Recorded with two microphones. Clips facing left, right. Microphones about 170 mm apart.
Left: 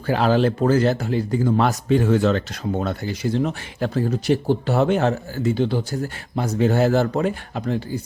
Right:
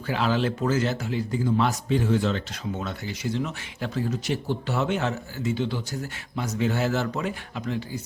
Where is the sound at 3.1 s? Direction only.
50° left (ahead or behind).